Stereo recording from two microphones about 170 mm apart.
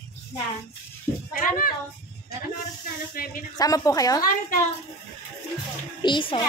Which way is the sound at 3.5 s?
20° left (ahead or behind).